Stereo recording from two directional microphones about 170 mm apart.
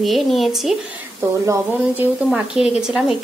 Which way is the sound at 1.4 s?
15° right (ahead or behind).